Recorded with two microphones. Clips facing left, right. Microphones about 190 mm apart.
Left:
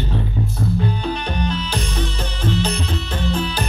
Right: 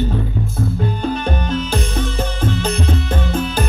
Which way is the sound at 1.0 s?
45° right (ahead or behind).